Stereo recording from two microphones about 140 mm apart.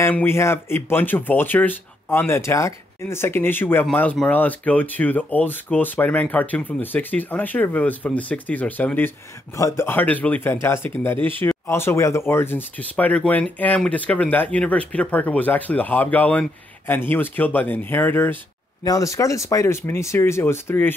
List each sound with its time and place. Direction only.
0.0 s speech: 15° left (ahead or behind)